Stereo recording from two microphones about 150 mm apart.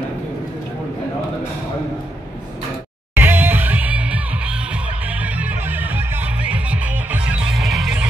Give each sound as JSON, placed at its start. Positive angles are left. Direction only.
{"t": 3.2, "sound": "music", "side_deg": -15}